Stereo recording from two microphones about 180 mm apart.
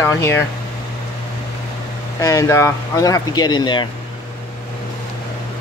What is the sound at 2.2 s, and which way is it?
Speech, 15° left (ahead or behind).